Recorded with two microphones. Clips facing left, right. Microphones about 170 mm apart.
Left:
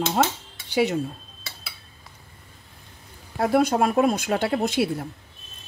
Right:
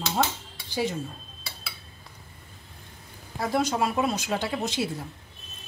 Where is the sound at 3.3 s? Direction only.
55° left (ahead or behind).